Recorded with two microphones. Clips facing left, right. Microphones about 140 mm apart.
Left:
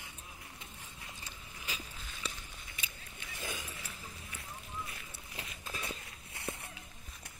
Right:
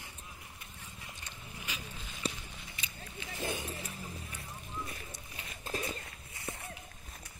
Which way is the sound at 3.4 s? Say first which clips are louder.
Right 6 dB; 30° right (ahead or behind).